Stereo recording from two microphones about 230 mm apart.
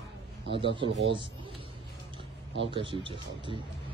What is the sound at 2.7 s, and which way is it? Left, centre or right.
Speech, right.